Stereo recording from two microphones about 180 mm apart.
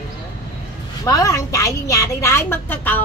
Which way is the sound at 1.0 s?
20° left (ahead or behind).